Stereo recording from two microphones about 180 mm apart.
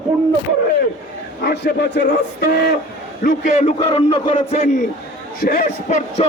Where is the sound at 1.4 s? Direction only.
65° left (ahead or behind).